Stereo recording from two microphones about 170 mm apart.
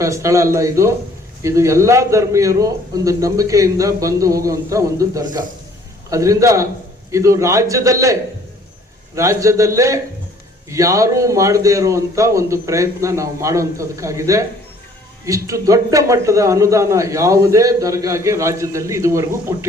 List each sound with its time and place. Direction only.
0.0 s a man's voice: 20° right (ahead or behind)